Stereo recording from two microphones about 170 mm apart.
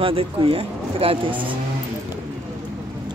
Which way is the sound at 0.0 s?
30° right (ahead or behind).